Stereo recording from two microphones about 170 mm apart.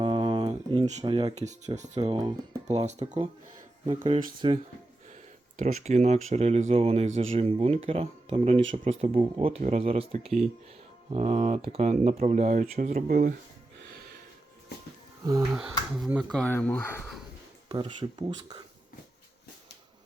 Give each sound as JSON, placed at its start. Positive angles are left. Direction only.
{"t": 0.0, "sound": "a sound", "side_deg": -30}
{"t": 1.0, "sound": "speech", "side_deg": -30}
{"t": 1.4, "sound": "speech", "side_deg": -45}
{"t": 2.0, "sound": "speech", "side_deg": -25}
{"t": 5.5, "sound": "speech", "side_deg": -45}
{"t": 13.1, "sound": "speech", "side_deg": -55}
{"t": 15.2, "sound": "speech", "side_deg": -20}
{"t": 16.3, "sound": "speech", "side_deg": 10}
{"t": 17.7, "sound": "speech", "side_deg": -25}